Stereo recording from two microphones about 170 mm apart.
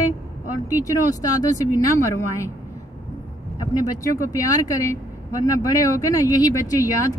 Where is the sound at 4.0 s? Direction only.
20° left (ahead or behind).